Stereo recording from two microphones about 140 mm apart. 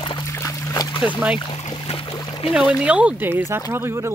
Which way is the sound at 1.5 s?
40° left (ahead or behind).